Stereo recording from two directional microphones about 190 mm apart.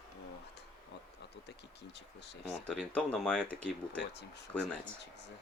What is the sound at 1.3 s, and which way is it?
Speech, 65° left (ahead or behind).